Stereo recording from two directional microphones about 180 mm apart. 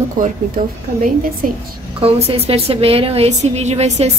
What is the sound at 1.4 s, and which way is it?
Speech, 50° right (ahead or behind).